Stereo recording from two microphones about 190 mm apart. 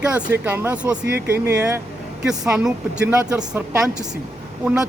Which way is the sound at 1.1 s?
55° right (ahead or behind).